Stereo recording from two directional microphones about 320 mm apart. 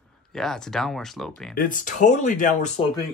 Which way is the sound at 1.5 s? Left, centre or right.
Left.